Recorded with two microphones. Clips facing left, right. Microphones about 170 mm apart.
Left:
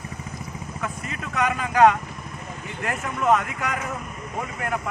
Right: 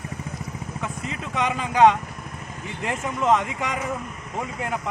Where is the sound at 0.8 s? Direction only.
25° right (ahead or behind).